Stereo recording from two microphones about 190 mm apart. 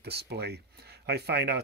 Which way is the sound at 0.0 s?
60° right (ahead or behind).